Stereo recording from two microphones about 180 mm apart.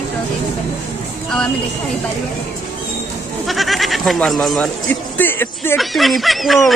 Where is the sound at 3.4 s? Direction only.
Centre (ahead or behind).